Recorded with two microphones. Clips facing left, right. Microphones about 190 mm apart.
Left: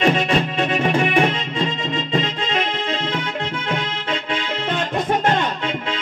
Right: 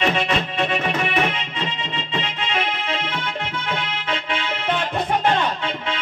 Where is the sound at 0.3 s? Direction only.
35° left (ahead or behind).